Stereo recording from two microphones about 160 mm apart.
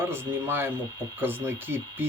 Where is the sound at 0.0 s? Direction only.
15° right (ahead or behind).